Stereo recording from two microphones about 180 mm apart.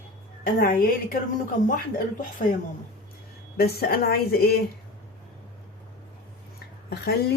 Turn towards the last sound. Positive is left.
turn(degrees=65)  # may be behind; listen again after turning